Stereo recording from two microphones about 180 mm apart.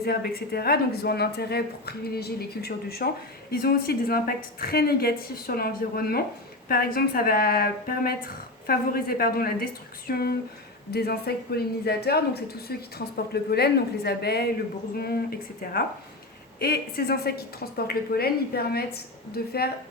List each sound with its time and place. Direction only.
0.0 s a woman's voice: 60° left (ahead or behind)